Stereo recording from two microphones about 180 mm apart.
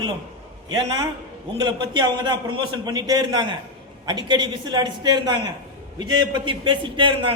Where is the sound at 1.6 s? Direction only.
25° right (ahead or behind).